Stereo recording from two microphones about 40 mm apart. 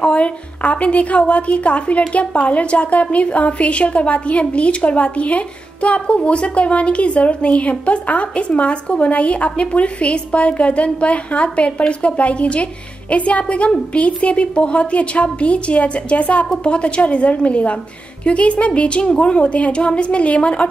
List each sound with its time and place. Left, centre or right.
0.0 s a woman's voice: left